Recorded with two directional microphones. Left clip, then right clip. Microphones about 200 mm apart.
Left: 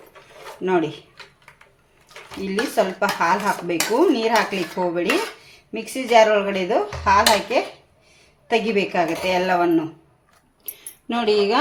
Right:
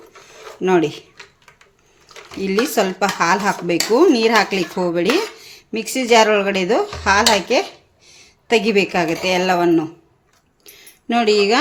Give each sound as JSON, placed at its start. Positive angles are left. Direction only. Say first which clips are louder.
{"t": 0.6, "sound": "speech", "louder": "right 5 dB", "side_deg": -45}
{"t": 2.4, "sound": "a woman's voice", "louder": "right 3 dB", "side_deg": -45}
{"t": 10.6, "sound": "a sound", "louder": "right 1 dB", "side_deg": -25}